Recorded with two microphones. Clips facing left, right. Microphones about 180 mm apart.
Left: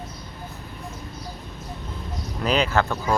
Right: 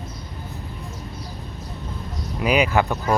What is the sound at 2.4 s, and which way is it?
Speech, 10° right (ahead or behind).